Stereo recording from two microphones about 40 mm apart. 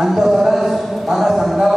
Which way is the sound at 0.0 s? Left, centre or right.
Centre.